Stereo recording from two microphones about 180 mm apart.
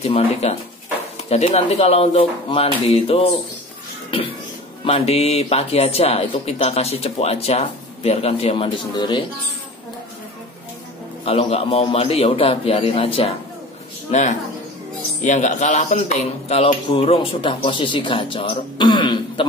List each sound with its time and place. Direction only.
0.0 s speech: 35° left (ahead or behind)
4.8 s speech: 35° left (ahead or behind)
11.2 s speech: 35° left (ahead or behind)
15.2 s speech: 40° left (ahead or behind)